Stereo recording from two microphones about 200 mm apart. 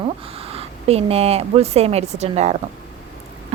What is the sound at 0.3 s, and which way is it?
A woman's voice, 30° right (ahead or behind).